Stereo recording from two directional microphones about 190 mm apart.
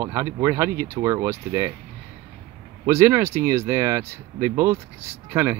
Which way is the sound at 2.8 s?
15° right (ahead or behind).